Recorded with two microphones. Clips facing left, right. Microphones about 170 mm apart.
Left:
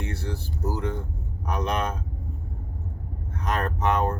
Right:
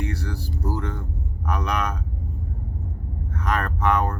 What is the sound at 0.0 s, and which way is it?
Speech, 25° left (ahead or behind).